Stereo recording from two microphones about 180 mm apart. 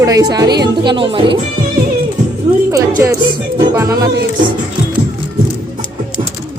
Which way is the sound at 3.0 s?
15° right (ahead or behind).